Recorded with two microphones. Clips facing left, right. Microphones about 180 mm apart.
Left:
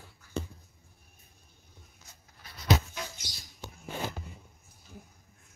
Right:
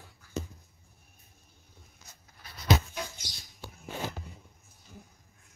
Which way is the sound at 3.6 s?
20° left (ahead or behind).